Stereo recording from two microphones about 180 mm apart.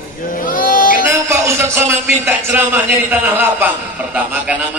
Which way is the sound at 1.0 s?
15° right (ahead or behind).